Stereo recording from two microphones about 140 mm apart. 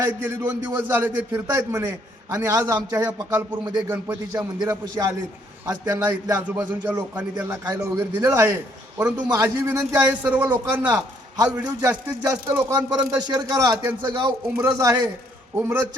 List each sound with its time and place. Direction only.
0.0 s a man's voice: 15° right (ahead or behind)
11.9 s speech: 20° right (ahead or behind)
15.5 s a man's voice: 15° right (ahead or behind)